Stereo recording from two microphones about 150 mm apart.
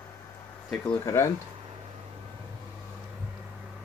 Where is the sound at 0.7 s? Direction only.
15° left (ahead or behind).